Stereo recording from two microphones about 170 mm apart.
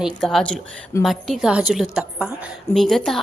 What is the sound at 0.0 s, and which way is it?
A woman's voice, centre (ahead or behind).